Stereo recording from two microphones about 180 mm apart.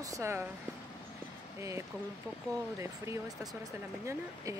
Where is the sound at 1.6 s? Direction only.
15° right (ahead or behind).